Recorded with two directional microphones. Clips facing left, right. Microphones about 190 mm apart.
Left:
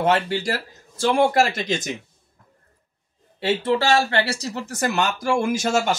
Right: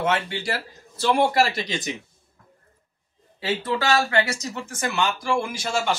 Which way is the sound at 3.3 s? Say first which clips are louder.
Left 5 dB; 30° left (ahead or behind).